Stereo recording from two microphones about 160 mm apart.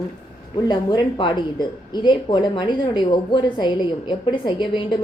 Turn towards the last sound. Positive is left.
turn(degrees=30)  # may be behind; listen again after turning